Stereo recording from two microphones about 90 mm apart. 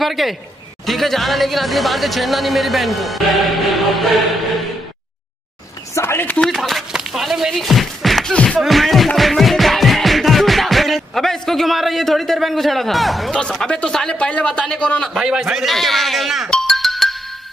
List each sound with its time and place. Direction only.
0.0 s speech: centre (ahead or behind)
5.9 s chopping: 25° left (ahead or behind)
6.4 s speech: 5° left (ahead or behind)
8.5 s music: centre (ahead or behind)
15.1 s speech: 5° right (ahead or behind)
16.4 s music: 10° left (ahead or behind)